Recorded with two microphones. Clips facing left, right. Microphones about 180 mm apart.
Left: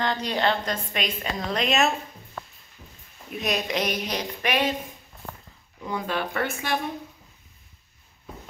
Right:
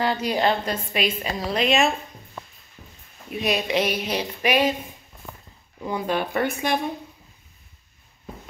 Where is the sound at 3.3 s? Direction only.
5° right (ahead or behind).